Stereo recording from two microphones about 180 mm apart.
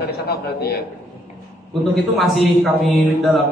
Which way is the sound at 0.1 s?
60° left (ahead or behind).